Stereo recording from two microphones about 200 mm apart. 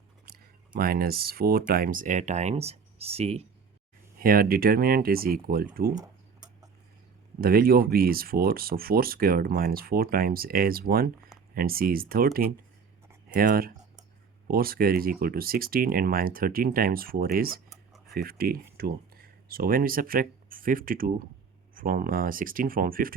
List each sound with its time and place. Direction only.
0.8 s speech: 50° right (ahead or behind); by 3.4 s 30° right (ahead or behind)
4.2 s speech: 45° right (ahead or behind)
7.4 s speech: 45° right (ahead or behind)